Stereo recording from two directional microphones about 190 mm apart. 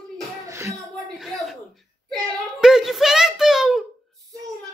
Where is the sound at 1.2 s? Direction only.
Centre (ahead or behind).